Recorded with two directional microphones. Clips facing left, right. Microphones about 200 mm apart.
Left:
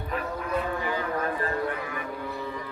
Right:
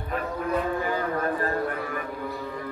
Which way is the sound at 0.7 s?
45° right (ahead or behind).